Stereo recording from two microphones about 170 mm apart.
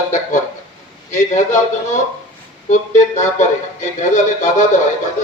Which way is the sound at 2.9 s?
45° left (ahead or behind).